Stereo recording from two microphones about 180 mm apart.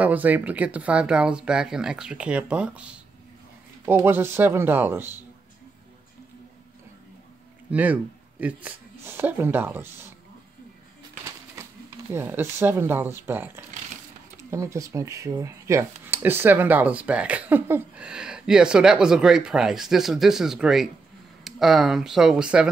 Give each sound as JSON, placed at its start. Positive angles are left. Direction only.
{"t": 0.0, "sound": "speech", "side_deg": -10}
{"t": 7.7, "sound": "speech", "side_deg": -10}
{"t": 11.6, "sound": "typewriter", "side_deg": -15}
{"t": 12.1, "sound": "speech", "side_deg": -15}